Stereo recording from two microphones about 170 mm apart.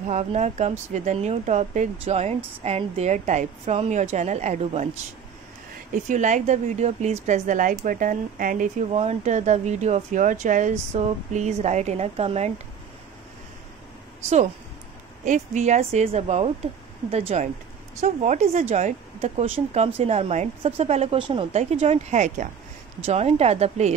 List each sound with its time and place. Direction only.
0.1 s speech: 40° right (ahead or behind)
6.0 s speech: 45° right (ahead or behind)
8.9 s speech: 40° right (ahead or behind)
15.2 s speech: 45° right (ahead or behind)